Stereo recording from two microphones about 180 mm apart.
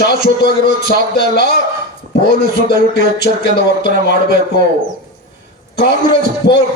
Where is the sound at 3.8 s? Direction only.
50° right (ahead or behind).